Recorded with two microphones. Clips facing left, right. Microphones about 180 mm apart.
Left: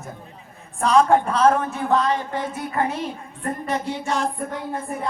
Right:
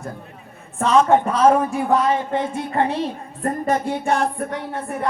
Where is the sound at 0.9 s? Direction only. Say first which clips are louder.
Right 1 dB; centre (ahead or behind).